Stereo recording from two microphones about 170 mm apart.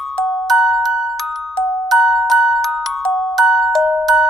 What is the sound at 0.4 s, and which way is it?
Glockenspiel, centre (ahead or behind).